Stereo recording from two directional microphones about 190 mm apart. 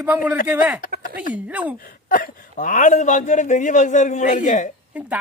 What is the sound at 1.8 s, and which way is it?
A man's voice, 50° left (ahead or behind).